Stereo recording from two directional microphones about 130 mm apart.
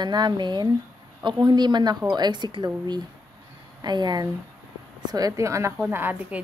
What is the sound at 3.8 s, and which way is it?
A woman's voice, 35° right (ahead or behind).